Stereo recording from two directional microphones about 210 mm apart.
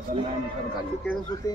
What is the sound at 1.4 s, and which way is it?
Speech, 15° left (ahead or behind).